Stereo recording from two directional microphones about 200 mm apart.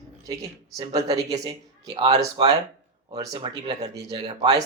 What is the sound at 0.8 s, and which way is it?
Speech, 30° right (ahead or behind).